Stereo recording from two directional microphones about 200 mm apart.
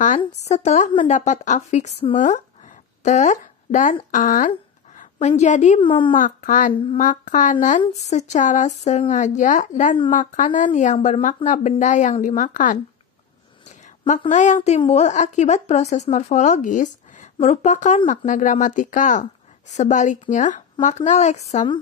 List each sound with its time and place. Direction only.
0.5 s a woman's voice: 35° left (ahead or behind)
5.8 s speech: 25° left (ahead or behind)
6.1 s a woman's voice: 40° left (ahead or behind)